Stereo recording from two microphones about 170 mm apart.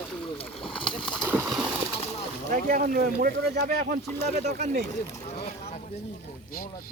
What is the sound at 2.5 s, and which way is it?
Speech, 50° right (ahead or behind).